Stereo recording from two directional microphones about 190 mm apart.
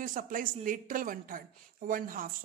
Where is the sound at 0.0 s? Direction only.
45° right (ahead or behind).